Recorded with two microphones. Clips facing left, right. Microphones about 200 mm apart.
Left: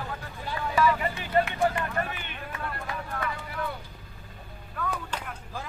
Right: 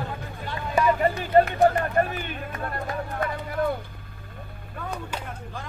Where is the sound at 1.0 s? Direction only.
40° right (ahead or behind).